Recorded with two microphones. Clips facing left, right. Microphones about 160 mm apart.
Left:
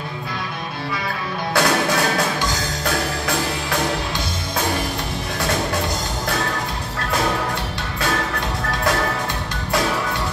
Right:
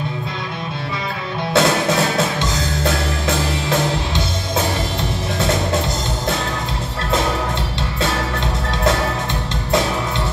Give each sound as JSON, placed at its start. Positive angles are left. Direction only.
{"t": 1.5, "sound": "music", "side_deg": -25}
{"t": 8.0, "sound": "music", "side_deg": -25}